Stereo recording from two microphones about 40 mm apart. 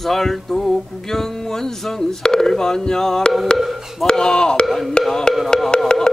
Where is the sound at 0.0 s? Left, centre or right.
Centre.